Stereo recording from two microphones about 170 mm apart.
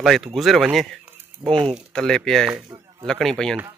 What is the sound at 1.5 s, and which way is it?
Speech, 30° right (ahead or behind).